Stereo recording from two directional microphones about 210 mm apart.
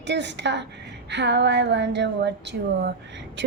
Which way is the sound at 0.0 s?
55° right (ahead or behind).